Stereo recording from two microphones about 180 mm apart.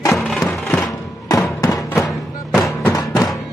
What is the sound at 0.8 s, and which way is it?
Music, 20° left (ahead or behind).